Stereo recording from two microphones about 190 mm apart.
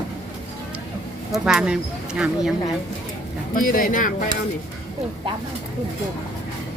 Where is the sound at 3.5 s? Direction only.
45° left (ahead or behind).